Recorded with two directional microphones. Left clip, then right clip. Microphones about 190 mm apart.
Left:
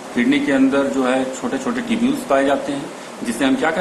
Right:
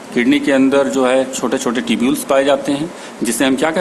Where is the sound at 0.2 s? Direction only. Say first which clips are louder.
Right 3 dB; 60° right (ahead or behind).